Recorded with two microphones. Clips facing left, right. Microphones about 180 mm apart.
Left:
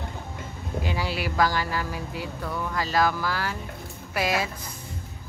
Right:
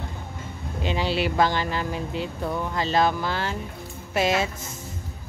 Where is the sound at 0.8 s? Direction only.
25° right (ahead or behind).